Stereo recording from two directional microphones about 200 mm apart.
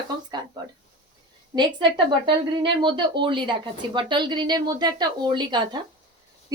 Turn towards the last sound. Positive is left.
turn(degrees=-20)  # may be behind; listen again after turning